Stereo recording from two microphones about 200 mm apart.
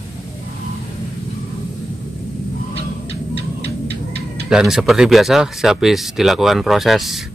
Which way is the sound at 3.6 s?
55° right (ahead or behind).